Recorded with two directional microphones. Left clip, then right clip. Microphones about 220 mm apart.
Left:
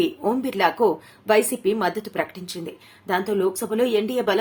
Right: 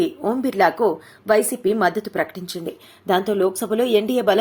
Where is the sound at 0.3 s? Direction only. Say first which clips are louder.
Right 4 dB; 15° right (ahead or behind).